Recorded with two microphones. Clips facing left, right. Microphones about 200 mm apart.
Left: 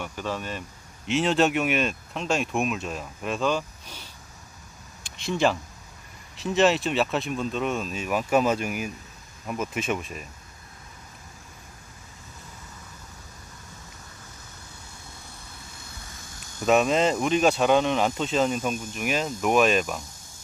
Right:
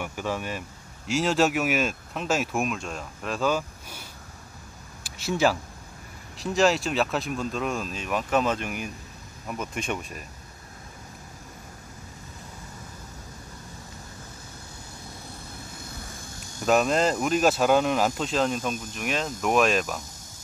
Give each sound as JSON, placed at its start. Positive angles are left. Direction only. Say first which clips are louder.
{"t": 0.0, "sound": "speech", "louder": "right 1 dB", "side_deg": -10}
{"t": 1.0, "sound": "speech", "louder": "left 1 dB", "side_deg": 0}
{"t": 16.6, "sound": "speech", "louder": "left 1 dB", "side_deg": 0}